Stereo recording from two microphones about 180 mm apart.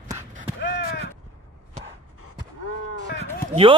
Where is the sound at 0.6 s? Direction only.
60° left (ahead or behind).